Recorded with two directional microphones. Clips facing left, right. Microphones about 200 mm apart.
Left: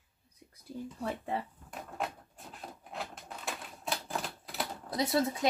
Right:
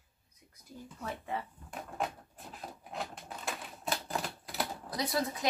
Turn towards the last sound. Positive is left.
turn(degrees=25)  # may be behind; listen again after turning